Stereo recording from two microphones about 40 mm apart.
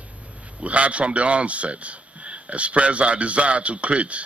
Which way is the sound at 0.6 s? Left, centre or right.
Right.